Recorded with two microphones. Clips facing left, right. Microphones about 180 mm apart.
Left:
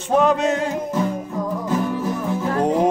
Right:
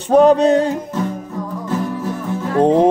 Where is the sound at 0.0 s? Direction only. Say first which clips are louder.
Right 7 dB; 35° right (ahead or behind).